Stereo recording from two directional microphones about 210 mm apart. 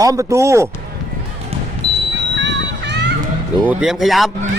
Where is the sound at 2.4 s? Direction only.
55° right (ahead or behind).